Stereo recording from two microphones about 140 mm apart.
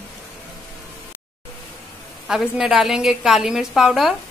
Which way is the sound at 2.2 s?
5° right (ahead or behind).